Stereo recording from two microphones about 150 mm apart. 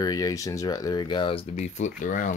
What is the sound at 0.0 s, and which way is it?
Speech, 25° left (ahead or behind).